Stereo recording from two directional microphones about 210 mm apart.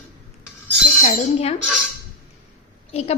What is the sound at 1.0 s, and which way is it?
Speech, 30° left (ahead or behind).